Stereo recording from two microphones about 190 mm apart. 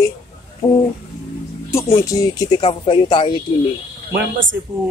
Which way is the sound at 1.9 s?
20° left (ahead or behind).